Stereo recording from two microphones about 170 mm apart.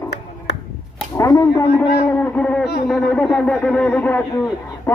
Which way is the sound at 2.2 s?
5° left (ahead or behind).